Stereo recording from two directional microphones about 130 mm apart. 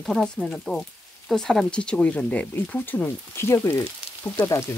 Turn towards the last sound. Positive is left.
turn(degrees=20)  # may be behind; listen again after turning